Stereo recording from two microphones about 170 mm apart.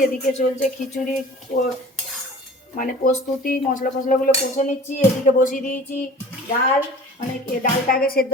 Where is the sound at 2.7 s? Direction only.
50° left (ahead or behind).